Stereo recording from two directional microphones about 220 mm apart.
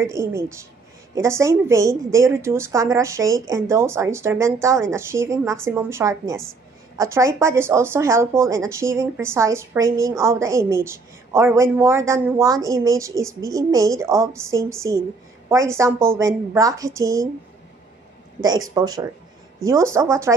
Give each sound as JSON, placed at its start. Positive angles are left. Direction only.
{"t": 0.0, "sound": "a woman's voice", "side_deg": -10}
{"t": 18.8, "sound": "a woman's voice", "side_deg": -15}